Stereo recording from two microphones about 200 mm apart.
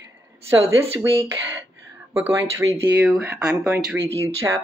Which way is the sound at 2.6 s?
15° right (ahead or behind).